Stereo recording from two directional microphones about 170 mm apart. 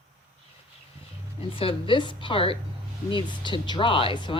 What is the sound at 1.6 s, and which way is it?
Speech, 30° left (ahead or behind).